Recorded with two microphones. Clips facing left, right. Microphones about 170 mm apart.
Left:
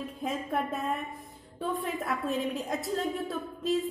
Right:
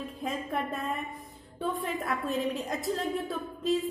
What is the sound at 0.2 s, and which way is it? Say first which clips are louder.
A woman's voice: left 1 dB; centre (ahead or behind).